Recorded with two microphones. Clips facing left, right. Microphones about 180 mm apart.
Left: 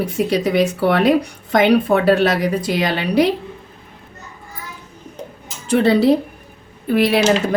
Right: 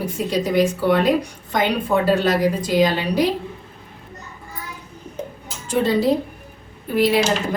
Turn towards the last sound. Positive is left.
turn(degrees=70)  # may be behind; listen again after turning